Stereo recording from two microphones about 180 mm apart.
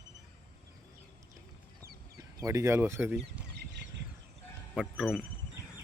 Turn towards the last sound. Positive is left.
turn(degrees=0)  # may be behind; listen again after turning